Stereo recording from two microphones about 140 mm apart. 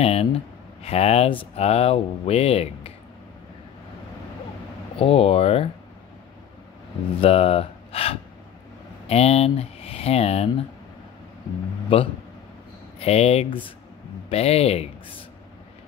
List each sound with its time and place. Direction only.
0.0 s speech: 45° left (ahead or behind)
4.9 s speech: 40° left (ahead or behind)
7.2 s speech: 45° left (ahead or behind)
11.9 s a man's voice: 40° left (ahead or behind)